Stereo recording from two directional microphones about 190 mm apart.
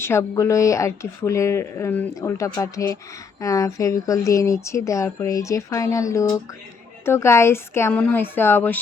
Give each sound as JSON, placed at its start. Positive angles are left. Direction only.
{"t": 0.0, "sound": "a woman's voice", "side_deg": 15}